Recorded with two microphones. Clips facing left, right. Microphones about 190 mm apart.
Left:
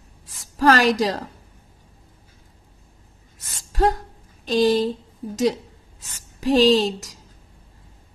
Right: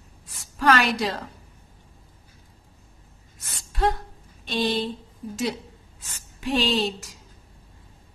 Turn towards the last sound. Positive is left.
turn(degrees=40)  # may be behind; listen again after turning